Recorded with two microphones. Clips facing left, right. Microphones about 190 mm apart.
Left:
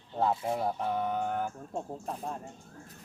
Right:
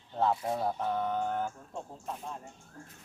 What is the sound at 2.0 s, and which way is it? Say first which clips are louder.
Speech: left 3 dB; 35° left (ahead or behind).